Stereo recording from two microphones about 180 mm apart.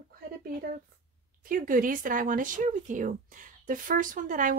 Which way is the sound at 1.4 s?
50° right (ahead or behind).